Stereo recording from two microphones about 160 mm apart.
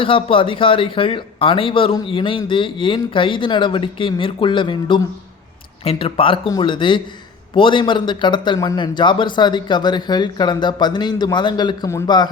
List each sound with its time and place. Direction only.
0.0 s a man's voice: 35° left (ahead or behind)